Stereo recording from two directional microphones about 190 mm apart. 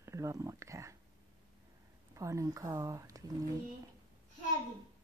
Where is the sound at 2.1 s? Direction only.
15° right (ahead or behind).